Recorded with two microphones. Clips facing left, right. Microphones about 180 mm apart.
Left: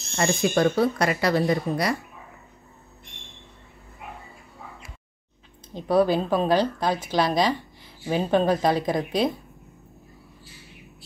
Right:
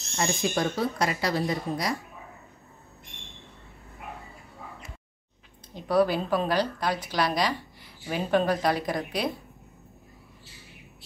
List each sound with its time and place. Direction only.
0.2 s speech: 65° left (ahead or behind)
5.9 s a woman's voice: 25° left (ahead or behind)